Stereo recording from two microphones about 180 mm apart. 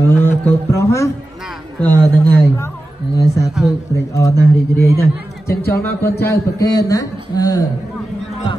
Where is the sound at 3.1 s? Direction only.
20° left (ahead or behind).